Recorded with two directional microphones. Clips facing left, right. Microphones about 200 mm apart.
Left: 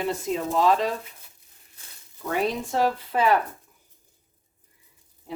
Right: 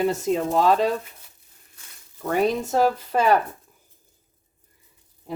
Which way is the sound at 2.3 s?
40° right (ahead or behind).